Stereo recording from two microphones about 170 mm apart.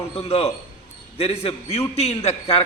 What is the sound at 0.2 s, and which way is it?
A man's voice, 35° left (ahead or behind).